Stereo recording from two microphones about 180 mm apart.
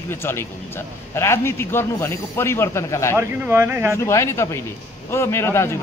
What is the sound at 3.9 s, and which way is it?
Speech, 15° left (ahead or behind).